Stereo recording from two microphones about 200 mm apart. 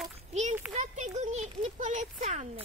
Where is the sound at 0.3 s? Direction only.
35° right (ahead or behind).